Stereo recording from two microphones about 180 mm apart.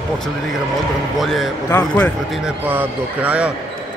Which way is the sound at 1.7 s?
15° left (ahead or behind).